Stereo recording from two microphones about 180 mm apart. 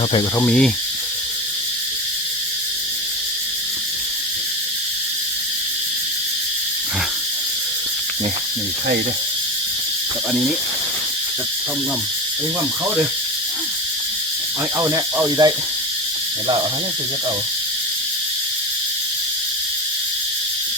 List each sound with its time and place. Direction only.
0.3 s speech: 5° left (ahead or behind)
14.8 s speech: 20° right (ahead or behind)